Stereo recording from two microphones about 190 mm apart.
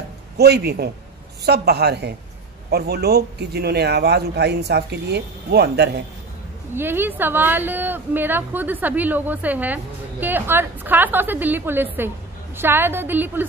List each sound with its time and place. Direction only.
0.4 s a man's voice: 60° right (ahead or behind)
6.7 s a woman's voice: 10° right (ahead or behind)